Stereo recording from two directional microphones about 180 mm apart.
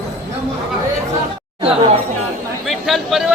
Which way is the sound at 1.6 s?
30° right (ahead or behind).